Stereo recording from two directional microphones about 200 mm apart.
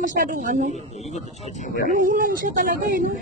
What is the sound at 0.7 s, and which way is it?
Speech, 35° left (ahead or behind).